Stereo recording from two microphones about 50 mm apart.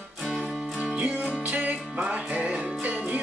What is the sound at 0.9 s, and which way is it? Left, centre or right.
Music, right.